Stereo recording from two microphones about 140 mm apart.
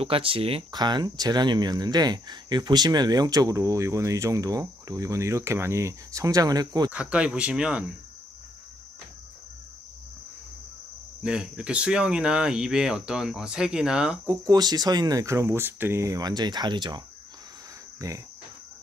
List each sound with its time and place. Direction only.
0.0 s speech: 40° right (ahead or behind)
6.9 s speech: 10° right (ahead or behind)
11.2 s speech: 5° right (ahead or behind)
14.4 s speech: 30° right (ahead or behind)
18.0 s speech: 25° right (ahead or behind)